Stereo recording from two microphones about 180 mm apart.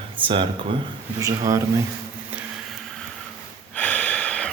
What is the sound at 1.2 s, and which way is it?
Speech, 20° right (ahead or behind).